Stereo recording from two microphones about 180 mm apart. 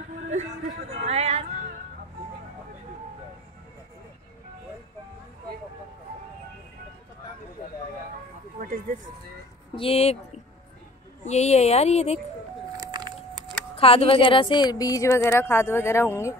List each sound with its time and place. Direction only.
0.3 s speech: 35° right (ahead or behind)
9.8 s speech: 35° left (ahead or behind)
12.7 s a sound: 25° right (ahead or behind)
13.7 s a woman's voice: 30° left (ahead or behind); by 16.3 s 15° left (ahead or behind)